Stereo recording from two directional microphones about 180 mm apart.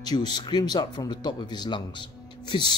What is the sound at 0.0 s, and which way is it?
A man's voice, 20° left (ahead or behind).